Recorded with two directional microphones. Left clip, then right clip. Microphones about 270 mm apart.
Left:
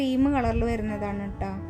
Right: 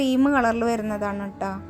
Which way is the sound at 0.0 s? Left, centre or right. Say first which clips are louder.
Right 5 dB; centre.